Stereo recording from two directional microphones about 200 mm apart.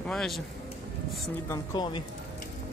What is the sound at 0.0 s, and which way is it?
Speech, 5° left (ahead or behind).